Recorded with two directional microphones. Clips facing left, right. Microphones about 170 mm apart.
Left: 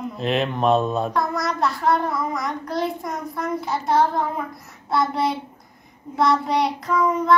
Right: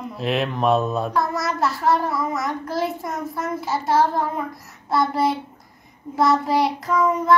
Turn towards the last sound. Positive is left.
turn(degrees=0)  # may be behind; listen again after turning